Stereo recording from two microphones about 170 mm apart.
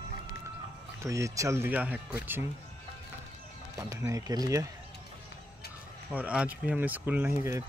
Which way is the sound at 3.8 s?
20° right (ahead or behind).